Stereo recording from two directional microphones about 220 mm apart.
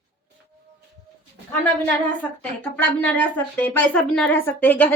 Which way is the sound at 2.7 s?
5° left (ahead or behind).